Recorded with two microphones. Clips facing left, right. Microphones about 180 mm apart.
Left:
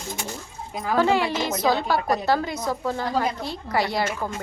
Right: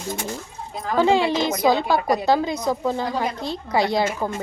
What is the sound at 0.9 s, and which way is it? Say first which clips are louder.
Speech: right 3 dB; 20° right (ahead or behind).